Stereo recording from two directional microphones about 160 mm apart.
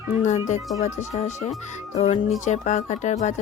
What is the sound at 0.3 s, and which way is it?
A woman's voice, 45° left (ahead or behind).